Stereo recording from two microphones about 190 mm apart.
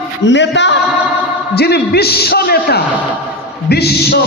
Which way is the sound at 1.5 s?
55° left (ahead or behind).